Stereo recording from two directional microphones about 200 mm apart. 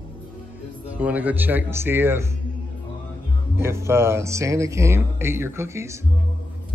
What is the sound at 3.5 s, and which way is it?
Speech, 15° right (ahead or behind).